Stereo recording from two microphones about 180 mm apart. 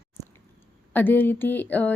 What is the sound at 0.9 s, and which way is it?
A woman's voice, 10° left (ahead or behind).